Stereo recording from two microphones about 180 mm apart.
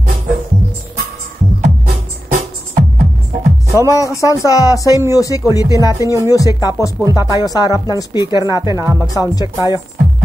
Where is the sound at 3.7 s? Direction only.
15° left (ahead or behind).